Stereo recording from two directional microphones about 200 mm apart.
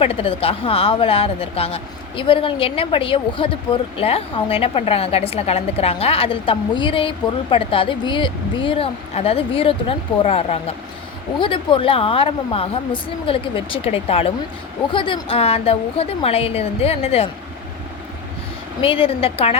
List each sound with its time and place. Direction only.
0.0 s speech: 30° left (ahead or behind)
18.8 s speech: 30° left (ahead or behind)